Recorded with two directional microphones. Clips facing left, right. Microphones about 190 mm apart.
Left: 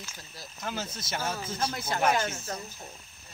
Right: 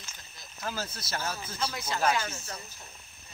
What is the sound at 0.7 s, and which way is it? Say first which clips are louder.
Speech: left 1 dB; 20° left (ahead or behind).